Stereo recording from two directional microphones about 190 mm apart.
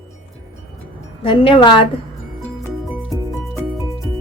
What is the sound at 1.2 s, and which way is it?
Speech, 25° left (ahead or behind).